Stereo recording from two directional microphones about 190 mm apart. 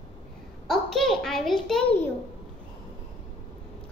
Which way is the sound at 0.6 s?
Centre (ahead or behind).